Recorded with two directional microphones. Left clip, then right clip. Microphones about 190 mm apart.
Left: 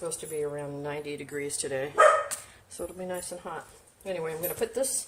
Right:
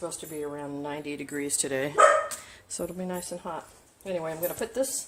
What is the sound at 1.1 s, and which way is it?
Speech, 35° right (ahead or behind).